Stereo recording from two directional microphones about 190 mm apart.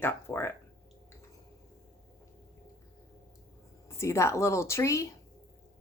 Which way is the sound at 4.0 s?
15° left (ahead or behind).